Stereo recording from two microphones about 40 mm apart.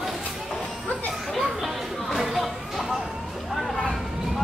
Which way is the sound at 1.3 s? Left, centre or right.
Centre.